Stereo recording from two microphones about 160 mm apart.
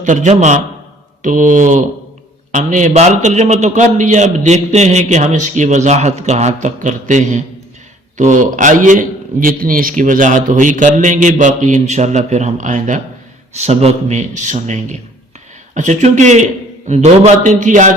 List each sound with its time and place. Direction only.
0.0 s a man's voice: 50° right (ahead or behind)